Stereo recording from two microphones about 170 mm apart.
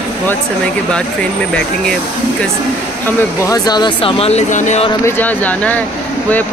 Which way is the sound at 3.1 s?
15° left (ahead or behind).